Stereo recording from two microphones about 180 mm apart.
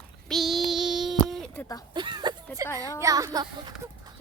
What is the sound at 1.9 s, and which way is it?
Speech, 25° right (ahead or behind).